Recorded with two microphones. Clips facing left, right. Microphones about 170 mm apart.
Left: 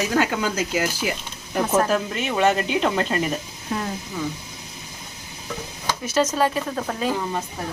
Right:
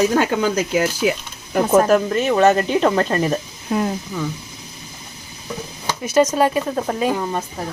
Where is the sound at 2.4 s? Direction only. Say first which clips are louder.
Right 4 dB; 45° right (ahead or behind).